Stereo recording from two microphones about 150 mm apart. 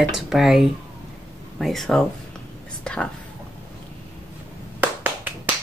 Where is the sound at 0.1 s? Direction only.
Centre (ahead or behind).